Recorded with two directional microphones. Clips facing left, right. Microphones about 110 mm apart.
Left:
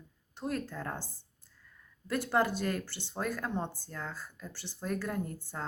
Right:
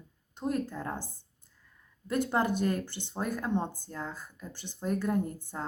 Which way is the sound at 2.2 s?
20° right (ahead or behind).